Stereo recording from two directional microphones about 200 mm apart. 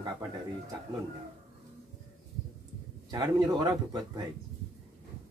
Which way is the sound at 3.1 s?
20° right (ahead or behind).